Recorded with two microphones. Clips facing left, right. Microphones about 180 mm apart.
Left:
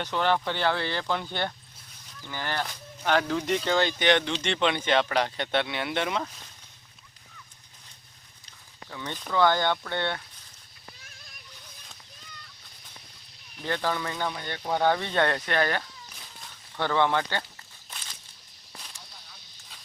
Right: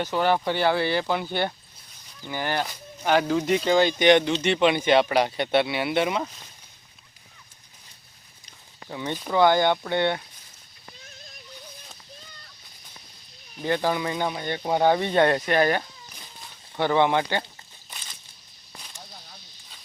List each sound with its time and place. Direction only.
0.0 s speech: 10° right (ahead or behind)
8.4 s speech: 15° right (ahead or behind)
13.6 s speech: 15° right (ahead or behind)